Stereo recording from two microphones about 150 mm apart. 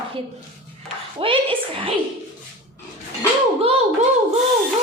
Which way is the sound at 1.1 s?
35° right (ahead or behind).